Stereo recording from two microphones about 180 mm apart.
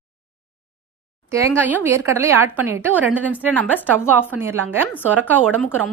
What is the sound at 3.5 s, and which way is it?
Speech, 10° left (ahead or behind).